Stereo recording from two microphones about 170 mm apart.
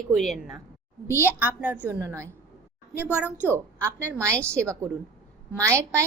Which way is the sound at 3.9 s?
15° right (ahead or behind).